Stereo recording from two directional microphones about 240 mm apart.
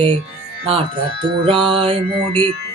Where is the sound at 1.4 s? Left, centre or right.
Right.